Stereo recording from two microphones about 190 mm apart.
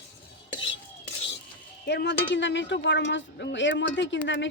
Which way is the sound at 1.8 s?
65° left (ahead or behind).